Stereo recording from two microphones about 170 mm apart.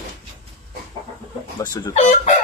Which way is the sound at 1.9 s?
40° left (ahead or behind).